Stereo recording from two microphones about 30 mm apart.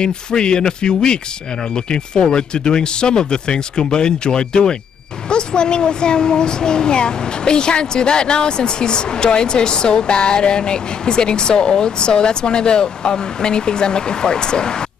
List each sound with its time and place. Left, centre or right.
0.0 s speech: left